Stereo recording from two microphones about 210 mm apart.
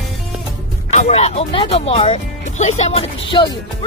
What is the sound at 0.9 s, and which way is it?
Speech, 30° left (ahead or behind).